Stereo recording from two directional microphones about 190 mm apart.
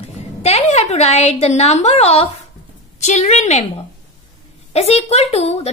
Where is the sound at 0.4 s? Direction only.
35° left (ahead or behind).